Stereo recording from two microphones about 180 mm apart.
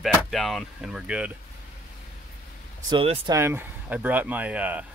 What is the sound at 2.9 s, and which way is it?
Speech, 25° right (ahead or behind).